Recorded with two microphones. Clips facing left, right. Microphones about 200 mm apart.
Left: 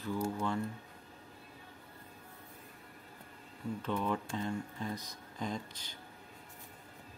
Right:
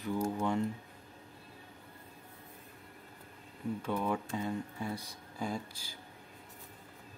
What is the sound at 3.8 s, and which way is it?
Speech, 10° right (ahead or behind).